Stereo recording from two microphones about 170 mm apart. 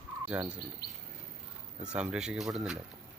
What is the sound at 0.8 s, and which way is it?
Speech, 70° left (ahead or behind).